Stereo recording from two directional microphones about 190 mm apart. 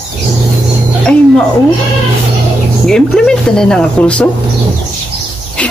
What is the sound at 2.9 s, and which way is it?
Speech, 5° left (ahead or behind).